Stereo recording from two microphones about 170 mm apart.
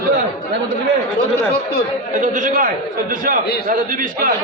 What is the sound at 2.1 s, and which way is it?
A man's voice, 50° right (ahead or behind).